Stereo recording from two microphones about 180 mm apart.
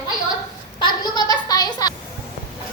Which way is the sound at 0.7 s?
25° left (ahead or behind).